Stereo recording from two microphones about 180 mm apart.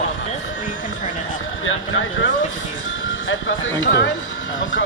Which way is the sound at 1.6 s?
90° left.